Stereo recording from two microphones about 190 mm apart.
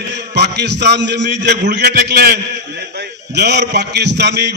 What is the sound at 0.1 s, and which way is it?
A man's voice, 65° right (ahead or behind).